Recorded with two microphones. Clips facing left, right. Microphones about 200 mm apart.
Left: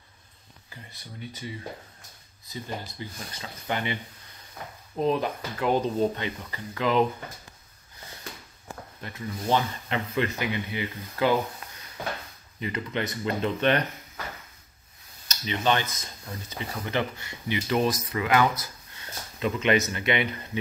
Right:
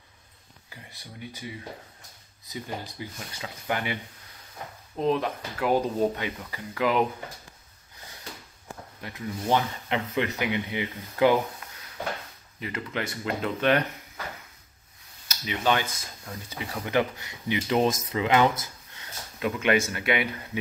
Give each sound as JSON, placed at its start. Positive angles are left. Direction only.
{"t": 2.5, "sound": "speech", "side_deg": -10}
{"t": 4.9, "sound": "speech", "side_deg": 0}
{"t": 9.0, "sound": "speech", "side_deg": -15}
{"t": 12.5, "sound": "speech", "side_deg": -5}
{"t": 15.2, "sound": "speech", "side_deg": -10}
{"t": 19.4, "sound": "speech", "side_deg": -10}